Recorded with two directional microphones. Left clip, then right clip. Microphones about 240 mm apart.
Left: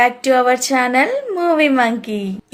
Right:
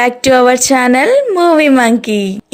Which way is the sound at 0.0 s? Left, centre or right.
Right.